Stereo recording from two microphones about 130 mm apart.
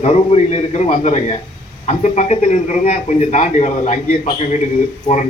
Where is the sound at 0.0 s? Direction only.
55° left (ahead or behind).